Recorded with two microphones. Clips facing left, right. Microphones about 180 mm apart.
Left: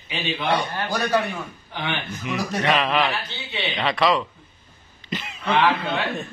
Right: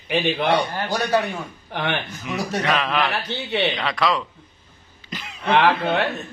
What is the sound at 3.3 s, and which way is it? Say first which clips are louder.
Speech: right 8 dB; 60° right (ahead or behind).